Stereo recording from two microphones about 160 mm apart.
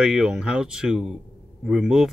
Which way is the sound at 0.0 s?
5° right (ahead or behind).